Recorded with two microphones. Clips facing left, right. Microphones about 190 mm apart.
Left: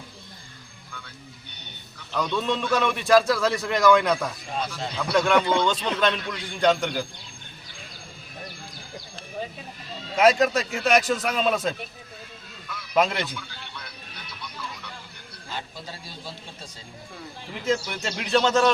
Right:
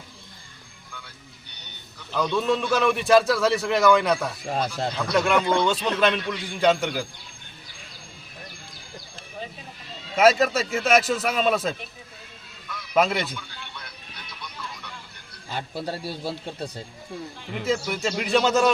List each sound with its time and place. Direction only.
2.1 s a man's voice: 5° right (ahead or behind)
10.2 s a man's voice: 5° right (ahead or behind)
12.9 s speech: 5° right (ahead or behind)
15.5 s a man's voice: 65° right (ahead or behind)
17.7 s a man's voice: 5° right (ahead or behind)